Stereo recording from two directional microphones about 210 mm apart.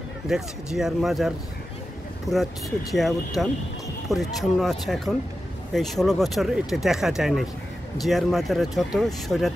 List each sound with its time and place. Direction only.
0.3 s speech: centre (ahead or behind)
2.3 s speech: 15° left (ahead or behind)
2.9 s speech: centre (ahead or behind)